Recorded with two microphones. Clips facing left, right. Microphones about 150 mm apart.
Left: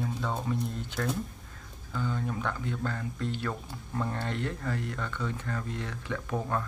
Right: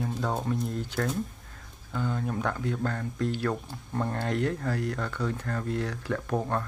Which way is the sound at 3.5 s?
40° right (ahead or behind).